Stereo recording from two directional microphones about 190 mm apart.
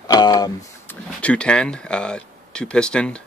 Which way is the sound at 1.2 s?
5° left (ahead or behind).